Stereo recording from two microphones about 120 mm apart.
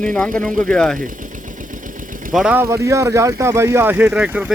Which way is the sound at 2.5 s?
25° right (ahead or behind).